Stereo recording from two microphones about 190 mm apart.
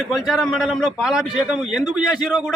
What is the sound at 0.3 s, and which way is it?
A man's voice, centre (ahead or behind).